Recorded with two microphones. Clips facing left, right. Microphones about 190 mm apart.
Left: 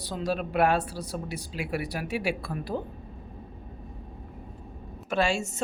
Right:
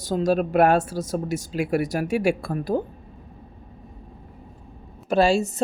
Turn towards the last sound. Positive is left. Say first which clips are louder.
# right 7 dB
turn(degrees=-35)  # may be behind; listen again after turning